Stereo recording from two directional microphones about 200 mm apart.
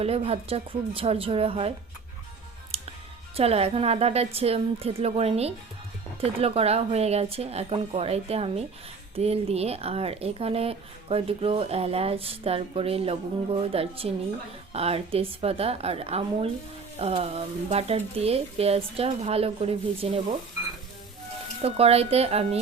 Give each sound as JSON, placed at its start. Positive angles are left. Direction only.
{"t": 0.0, "sound": "speech", "side_deg": -30}
{"t": 2.7, "sound": "music", "side_deg": -30}
{"t": 3.3, "sound": "speech", "side_deg": -30}
{"t": 21.6, "sound": "speech", "side_deg": -30}